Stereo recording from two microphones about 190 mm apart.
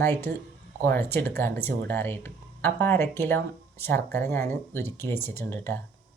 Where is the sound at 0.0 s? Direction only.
10° left (ahead or behind).